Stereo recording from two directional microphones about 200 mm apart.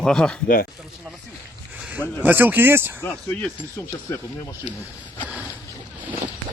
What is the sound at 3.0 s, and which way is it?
Speech, 5° left (ahead or behind).